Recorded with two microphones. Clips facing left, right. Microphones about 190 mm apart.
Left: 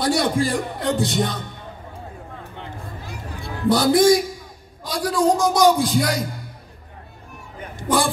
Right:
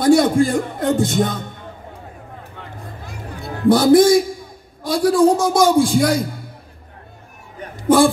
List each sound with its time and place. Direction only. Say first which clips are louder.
0.0 s speech: right 7 dB; 50° right (ahead or behind)
3.6 s speech: right 4 dB; 50° right (ahead or behind)